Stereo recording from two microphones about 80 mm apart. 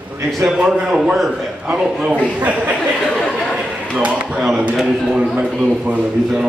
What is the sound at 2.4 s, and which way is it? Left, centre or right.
Speech, right.